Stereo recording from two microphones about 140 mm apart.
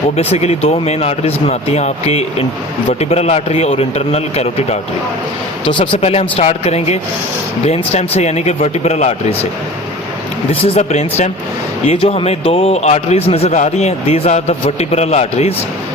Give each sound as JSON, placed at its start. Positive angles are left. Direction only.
{"t": 0.2, "sound": "a man's voice", "side_deg": 50}
{"t": 5.6, "sound": "a man's voice", "side_deg": 35}
{"t": 10.5, "sound": "a man's voice", "side_deg": 45}